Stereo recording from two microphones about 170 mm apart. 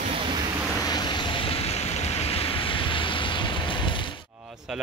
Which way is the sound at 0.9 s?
25° left (ahead or behind).